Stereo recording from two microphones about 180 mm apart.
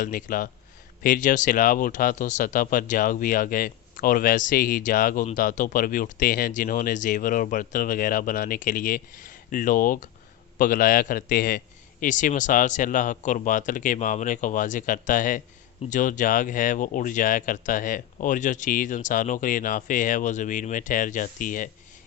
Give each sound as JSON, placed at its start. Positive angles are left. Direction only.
{"t": 0.0, "sound": "speech", "side_deg": 50}